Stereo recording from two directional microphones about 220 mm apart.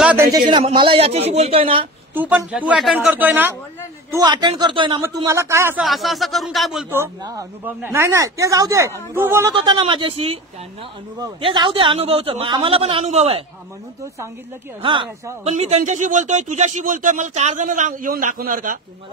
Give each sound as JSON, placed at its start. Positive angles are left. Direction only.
{"t": 0.0, "sound": "a sound", "side_deg": -10}
{"t": 0.5, "sound": "speech", "side_deg": -20}
{"t": 2.1, "sound": "speech", "side_deg": -10}
{"t": 4.1, "sound": "speech", "side_deg": -20}
{"t": 9.6, "sound": "speech", "side_deg": -25}
{"t": 14.8, "sound": "speech", "side_deg": -20}